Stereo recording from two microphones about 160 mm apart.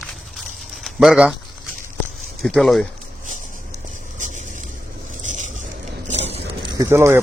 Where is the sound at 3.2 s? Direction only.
50° right (ahead or behind).